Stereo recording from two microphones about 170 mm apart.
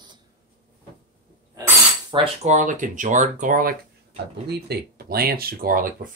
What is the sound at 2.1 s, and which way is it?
Speech, 40° right (ahead or behind).